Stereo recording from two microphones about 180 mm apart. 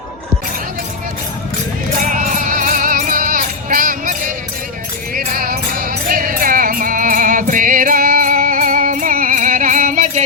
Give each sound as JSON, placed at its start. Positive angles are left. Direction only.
{"t": 2.0, "sound": "music", "side_deg": -45}